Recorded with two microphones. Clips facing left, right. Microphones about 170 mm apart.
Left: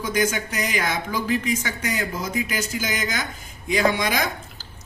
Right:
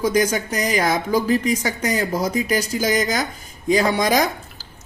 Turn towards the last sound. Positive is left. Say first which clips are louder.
# right 4 dB
turn(degrees=-40)  # may be behind; listen again after turning